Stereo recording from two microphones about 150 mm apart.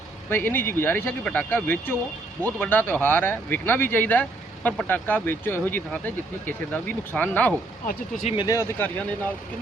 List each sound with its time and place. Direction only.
0.3 s speech: 15° left (ahead or behind)
7.9 s speech: 60° left (ahead or behind)
8.4 s speech: 20° left (ahead or behind)